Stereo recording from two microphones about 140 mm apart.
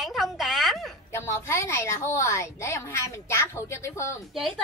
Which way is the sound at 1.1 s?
20° left (ahead or behind).